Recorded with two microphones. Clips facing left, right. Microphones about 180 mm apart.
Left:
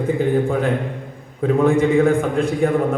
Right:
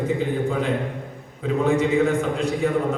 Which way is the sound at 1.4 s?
55° left (ahead or behind).